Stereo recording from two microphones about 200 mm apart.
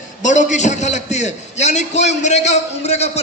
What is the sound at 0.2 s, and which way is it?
A man's voice, 40° left (ahead or behind).